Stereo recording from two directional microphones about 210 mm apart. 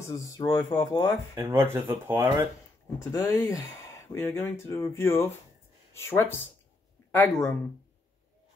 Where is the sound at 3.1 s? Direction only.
15° left (ahead or behind).